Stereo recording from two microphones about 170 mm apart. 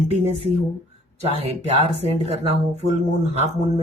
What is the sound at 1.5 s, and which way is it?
A woman's voice, 40° right (ahead or behind).